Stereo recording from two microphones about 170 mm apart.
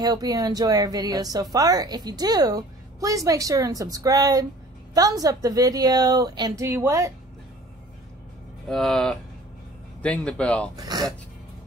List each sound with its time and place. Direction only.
0.0 s a woman's voice: 20° right (ahead or behind)
8.6 s speech: centre (ahead or behind)
10.9 s a woman's voice: 25° right (ahead or behind)